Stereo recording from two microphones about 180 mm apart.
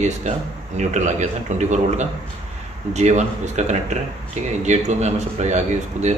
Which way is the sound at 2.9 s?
40° right (ahead or behind).